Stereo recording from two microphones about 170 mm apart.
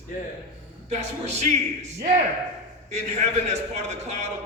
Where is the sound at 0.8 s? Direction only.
40° right (ahead or behind).